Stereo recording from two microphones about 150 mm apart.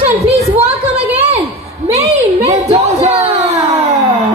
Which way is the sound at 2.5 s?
45° right (ahead or behind).